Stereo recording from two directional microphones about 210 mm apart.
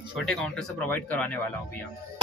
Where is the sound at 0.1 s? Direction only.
Centre (ahead or behind).